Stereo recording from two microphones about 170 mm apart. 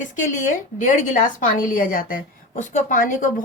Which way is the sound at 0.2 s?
50° left (ahead or behind).